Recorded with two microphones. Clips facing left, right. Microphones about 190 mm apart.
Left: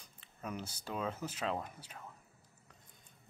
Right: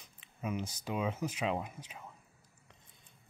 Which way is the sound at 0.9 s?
10° right (ahead or behind).